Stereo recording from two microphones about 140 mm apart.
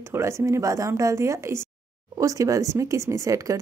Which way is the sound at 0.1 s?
20° right (ahead or behind).